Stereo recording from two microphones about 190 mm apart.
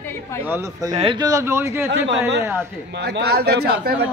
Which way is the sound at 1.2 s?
15° right (ahead or behind).